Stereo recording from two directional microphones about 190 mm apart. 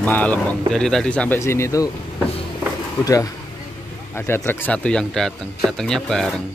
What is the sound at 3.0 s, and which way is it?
Speech, 20° left (ahead or behind).